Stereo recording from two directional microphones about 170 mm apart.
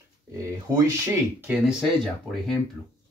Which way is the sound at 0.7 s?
20° right (ahead or behind).